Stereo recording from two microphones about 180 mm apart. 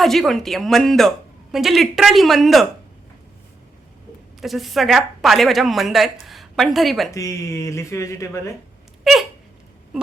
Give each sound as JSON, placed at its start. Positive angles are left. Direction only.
{"t": 0.0, "sound": "a woman's voice", "side_deg": 0}
{"t": 4.4, "sound": "a woman's voice", "side_deg": 0}
{"t": 7.1, "sound": "speech", "side_deg": 15}
{"t": 9.1, "sound": "a sound", "side_deg": 0}